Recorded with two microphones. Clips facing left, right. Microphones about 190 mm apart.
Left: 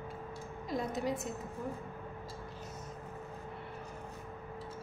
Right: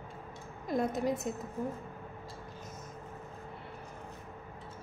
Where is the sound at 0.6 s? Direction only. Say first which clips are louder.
Right 4 dB; 55° right (ahead or behind).